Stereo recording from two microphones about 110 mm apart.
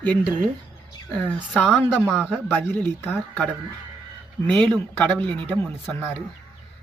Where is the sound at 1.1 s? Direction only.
15° left (ahead or behind).